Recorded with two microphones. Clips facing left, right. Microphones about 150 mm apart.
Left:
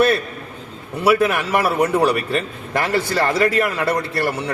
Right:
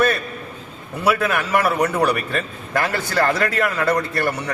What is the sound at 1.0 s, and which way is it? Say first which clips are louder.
A man's voice: left 3 dB; 10° left (ahead or behind).